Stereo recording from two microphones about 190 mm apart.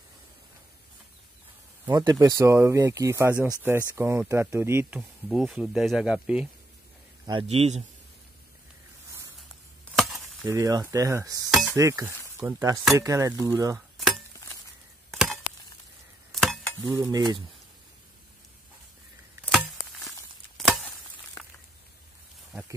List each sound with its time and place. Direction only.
1.9 s speech: 20° right (ahead or behind); by 6.5 s 5° right (ahead or behind)
7.2 s a man's voice: 30° right (ahead or behind)
9.9 s sizzle: centre (ahead or behind)
10.4 s speech: 15° right (ahead or behind)
13.7 s cutlery: centre (ahead or behind)
15.0 s chop: centre (ahead or behind)
16.3 s a sound: centre (ahead or behind)
16.9 s speech: 15° right (ahead or behind)
19.5 s chop: centre (ahead or behind)